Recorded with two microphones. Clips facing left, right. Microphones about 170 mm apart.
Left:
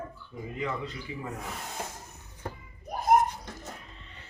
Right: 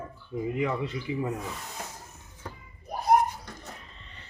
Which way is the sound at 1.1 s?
25° right (ahead or behind).